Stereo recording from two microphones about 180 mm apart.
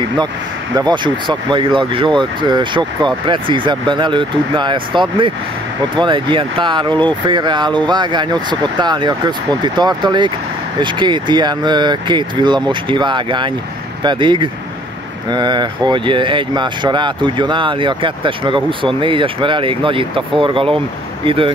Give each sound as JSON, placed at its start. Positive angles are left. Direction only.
{"t": 0.7, "sound": "speech", "side_deg": -25}